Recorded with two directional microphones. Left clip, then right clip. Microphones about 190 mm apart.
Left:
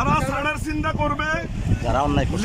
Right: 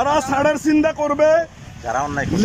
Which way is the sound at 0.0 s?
25° right (ahead or behind).